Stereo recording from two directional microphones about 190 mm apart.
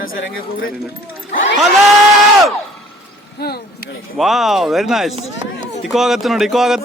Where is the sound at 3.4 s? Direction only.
55° left (ahead or behind).